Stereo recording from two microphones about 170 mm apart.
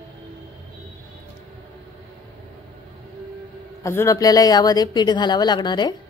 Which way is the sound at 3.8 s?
15° left (ahead or behind).